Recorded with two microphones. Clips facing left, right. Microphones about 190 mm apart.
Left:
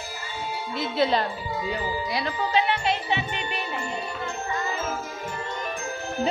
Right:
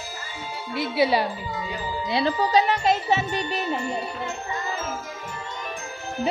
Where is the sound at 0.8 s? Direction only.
10° right (ahead or behind).